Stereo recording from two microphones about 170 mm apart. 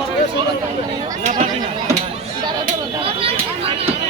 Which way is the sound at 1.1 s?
50° right (ahead or behind).